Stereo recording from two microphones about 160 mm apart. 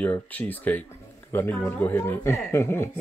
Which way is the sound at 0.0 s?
10° left (ahead or behind).